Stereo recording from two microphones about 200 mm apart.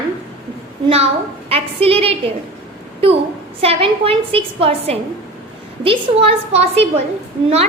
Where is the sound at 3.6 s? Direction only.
30° right (ahead or behind).